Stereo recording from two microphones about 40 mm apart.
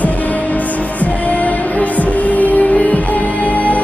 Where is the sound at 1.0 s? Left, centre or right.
Left.